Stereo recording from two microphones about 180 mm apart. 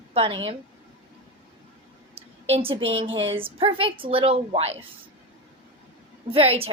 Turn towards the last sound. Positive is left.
turn(degrees=-35)  # may be behind; listen again after turning